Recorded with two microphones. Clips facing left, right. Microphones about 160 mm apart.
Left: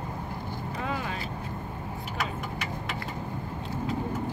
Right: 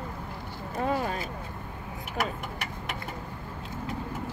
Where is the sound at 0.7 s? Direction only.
45° right (ahead or behind).